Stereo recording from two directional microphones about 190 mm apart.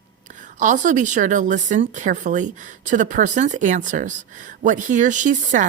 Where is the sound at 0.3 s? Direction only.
40° right (ahead or behind).